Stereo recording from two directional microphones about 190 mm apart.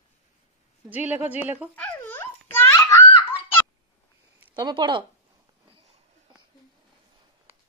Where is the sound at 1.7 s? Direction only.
10° left (ahead or behind).